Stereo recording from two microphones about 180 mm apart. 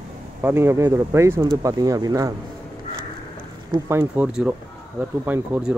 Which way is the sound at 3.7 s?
15° right (ahead or behind).